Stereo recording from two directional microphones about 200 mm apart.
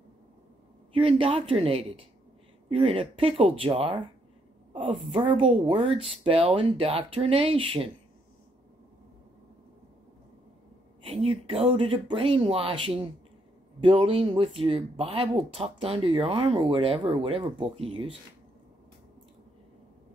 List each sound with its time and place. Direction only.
0.9 s speech: 25° right (ahead or behind)
11.1 s speech: 30° right (ahead or behind)